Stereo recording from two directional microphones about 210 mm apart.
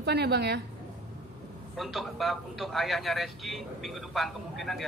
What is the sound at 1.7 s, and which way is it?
A man's voice, centre (ahead or behind).